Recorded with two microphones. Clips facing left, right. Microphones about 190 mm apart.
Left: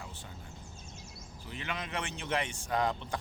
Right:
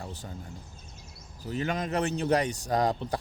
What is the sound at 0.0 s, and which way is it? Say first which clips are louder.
Speech: right 7 dB; 40° right (ahead or behind).